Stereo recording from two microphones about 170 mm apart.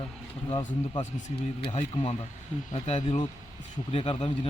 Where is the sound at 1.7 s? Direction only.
35° left (ahead or behind).